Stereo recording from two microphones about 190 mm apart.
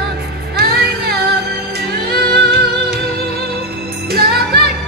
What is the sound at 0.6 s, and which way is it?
Music, 55° right (ahead or behind).